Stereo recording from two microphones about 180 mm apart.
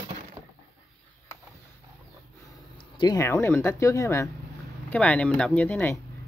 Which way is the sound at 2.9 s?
20° left (ahead or behind).